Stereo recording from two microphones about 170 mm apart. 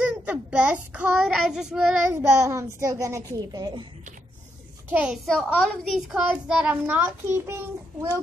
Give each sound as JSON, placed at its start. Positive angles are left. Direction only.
{"t": 0.0, "sound": "child singing", "side_deg": -5}
{"t": 2.2, "sound": "a child's voice", "side_deg": -15}
{"t": 4.8, "sound": "a child's voice", "side_deg": -5}